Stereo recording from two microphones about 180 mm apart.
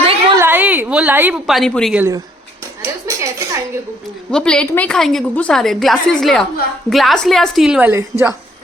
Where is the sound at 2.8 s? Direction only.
15° right (ahead or behind).